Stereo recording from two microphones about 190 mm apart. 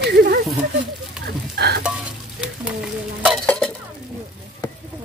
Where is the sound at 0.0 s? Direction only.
55° right (ahead or behind).